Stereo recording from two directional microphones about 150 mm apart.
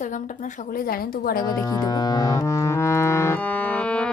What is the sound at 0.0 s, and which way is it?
A woman's voice, 60° left (ahead or behind).